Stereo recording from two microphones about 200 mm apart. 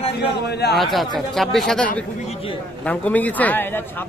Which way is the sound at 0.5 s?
55° left (ahead or behind).